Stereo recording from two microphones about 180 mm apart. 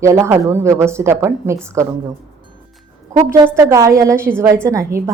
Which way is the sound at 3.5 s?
15° right (ahead or behind).